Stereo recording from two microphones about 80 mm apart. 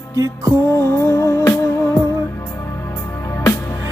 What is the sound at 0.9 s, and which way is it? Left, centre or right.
Music, left.